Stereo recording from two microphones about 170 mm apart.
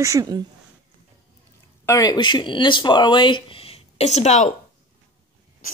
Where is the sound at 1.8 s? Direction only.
20° left (ahead or behind); by 4.5 s 40° left (ahead or behind).